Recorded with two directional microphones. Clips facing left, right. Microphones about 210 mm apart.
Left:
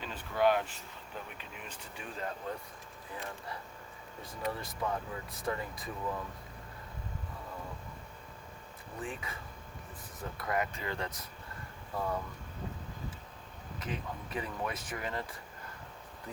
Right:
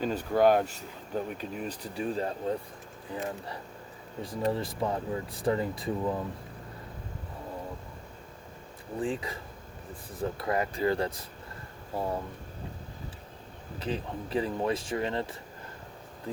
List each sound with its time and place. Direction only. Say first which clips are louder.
0.0 s speech: right 6 dB; 40° right (ahead or behind)
9.0 s speech: right 9 dB; 30° right (ahead or behind)
13.7 s speech: right 6 dB; 30° right (ahead or behind)